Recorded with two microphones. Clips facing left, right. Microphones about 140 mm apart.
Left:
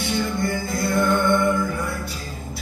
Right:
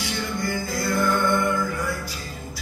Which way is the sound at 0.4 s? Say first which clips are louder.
Left 3 dB; 25° left (ahead or behind).